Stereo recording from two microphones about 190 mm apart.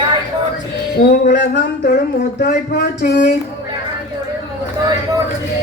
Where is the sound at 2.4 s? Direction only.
60° left (ahead or behind).